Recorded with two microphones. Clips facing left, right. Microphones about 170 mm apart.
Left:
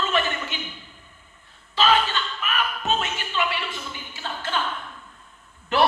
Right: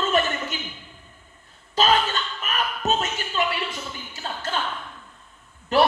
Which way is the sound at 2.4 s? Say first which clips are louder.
Right 2 dB; 40° right (ahead or behind).